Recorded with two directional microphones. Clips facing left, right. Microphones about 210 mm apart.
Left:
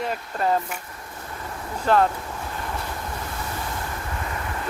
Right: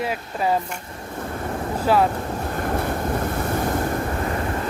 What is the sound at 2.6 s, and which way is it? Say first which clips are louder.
Waves: right 10 dB; 55° right (ahead or behind).